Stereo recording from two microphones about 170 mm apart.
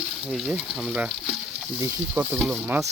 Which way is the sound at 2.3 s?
Centre (ahead or behind).